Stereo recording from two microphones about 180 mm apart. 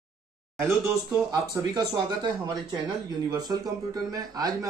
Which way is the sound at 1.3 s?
20° right (ahead or behind).